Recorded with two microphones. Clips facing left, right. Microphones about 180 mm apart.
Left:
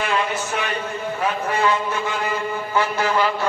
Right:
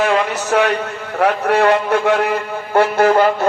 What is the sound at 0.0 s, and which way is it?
A man's voice, 75° right (ahead or behind).